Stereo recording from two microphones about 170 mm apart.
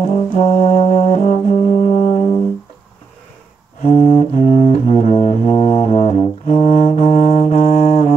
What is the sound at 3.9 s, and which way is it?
Music, 40° left (ahead or behind).